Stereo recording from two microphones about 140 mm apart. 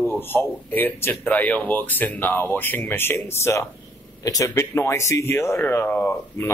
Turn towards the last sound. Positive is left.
turn(degrees=15)  # may be behind; listen again after turning